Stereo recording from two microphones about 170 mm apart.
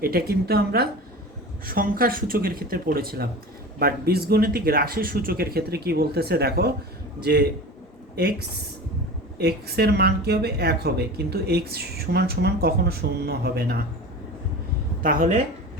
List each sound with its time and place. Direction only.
0.0 s speech: 65° right (ahead or behind)
7.2 s a man's voice: 85° right
8.2 s speech: 65° right (ahead or behind)
15.0 s speech: 55° right (ahead or behind)